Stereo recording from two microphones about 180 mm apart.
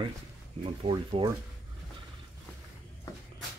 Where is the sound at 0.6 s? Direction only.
30° right (ahead or behind).